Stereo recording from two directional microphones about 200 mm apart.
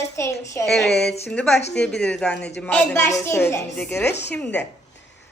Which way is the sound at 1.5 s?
60° left (ahead or behind).